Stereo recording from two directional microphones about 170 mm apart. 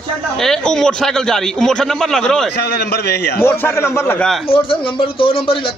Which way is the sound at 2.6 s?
70° left (ahead or behind).